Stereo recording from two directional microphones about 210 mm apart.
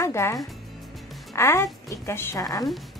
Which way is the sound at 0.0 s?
15° left (ahead or behind).